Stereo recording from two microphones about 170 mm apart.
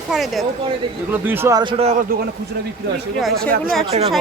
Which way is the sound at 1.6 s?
30° right (ahead or behind).